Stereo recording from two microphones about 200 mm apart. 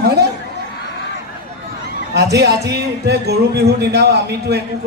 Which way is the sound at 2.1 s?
55° right (ahead or behind).